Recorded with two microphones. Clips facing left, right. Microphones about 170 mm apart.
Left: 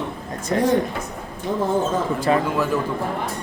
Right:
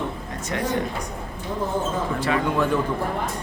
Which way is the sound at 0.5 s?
35° left (ahead or behind).